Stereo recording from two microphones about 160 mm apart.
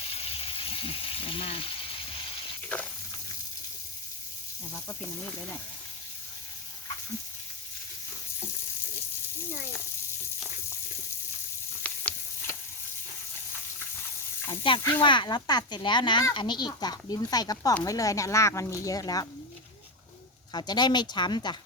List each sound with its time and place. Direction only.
0.1 s a sound: 40° left (ahead or behind)
11.8 s sizzle: 10° left (ahead or behind)
14.5 s sizzle: 35° left (ahead or behind)
15.0 s speech: 30° left (ahead or behind)
20.5 s speech: 25° left (ahead or behind)